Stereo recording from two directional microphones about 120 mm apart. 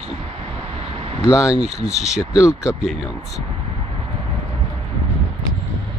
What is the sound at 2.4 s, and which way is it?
Speech, 25° left (ahead or behind).